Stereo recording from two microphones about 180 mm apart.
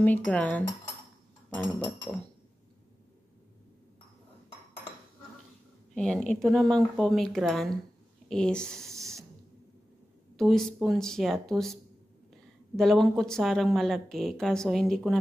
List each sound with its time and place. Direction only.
0.0 s speech: 10° left (ahead or behind)
5.9 s speech: 5° left (ahead or behind)
8.9 s spray: 15° right (ahead or behind)
10.3 s speech: centre (ahead or behind)